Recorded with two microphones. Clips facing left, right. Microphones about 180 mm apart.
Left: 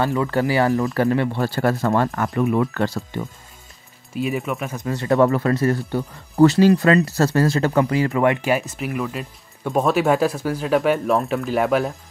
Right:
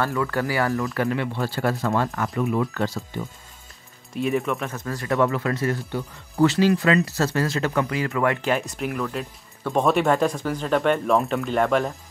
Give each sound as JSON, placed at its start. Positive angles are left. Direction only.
{"t": 0.0, "sound": "speech", "side_deg": 20}
{"t": 0.9, "sound": "speech", "side_deg": 40}
{"t": 4.1, "sound": "speech", "side_deg": 0}
{"t": 4.7, "sound": "speech", "side_deg": 25}
{"t": 5.1, "sound": "speech", "side_deg": 40}
{"t": 8.4, "sound": "speech", "side_deg": 10}